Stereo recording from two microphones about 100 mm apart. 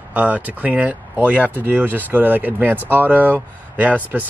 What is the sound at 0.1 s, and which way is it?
Speech, 15° right (ahead or behind).